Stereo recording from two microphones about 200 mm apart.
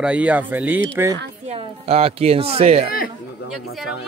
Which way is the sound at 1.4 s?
30° right (ahead or behind).